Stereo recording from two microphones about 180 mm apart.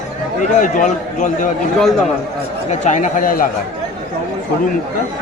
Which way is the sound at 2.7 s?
40° left (ahead or behind).